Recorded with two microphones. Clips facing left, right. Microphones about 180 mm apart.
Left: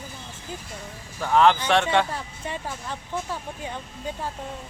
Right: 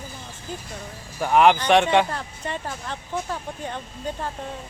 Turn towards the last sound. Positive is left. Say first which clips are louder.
# right 2 dB
turn(degrees=10)  # may be behind; listen again after turning